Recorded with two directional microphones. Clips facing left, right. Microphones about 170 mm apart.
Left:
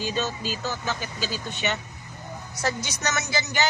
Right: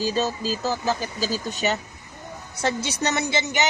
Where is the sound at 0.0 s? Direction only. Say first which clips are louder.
Right 4 dB; 35° right (ahead or behind).